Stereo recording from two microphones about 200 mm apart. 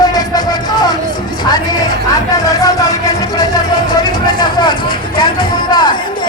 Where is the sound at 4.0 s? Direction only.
20° left (ahead or behind).